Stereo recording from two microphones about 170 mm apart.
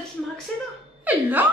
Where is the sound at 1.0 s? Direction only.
10° right (ahead or behind).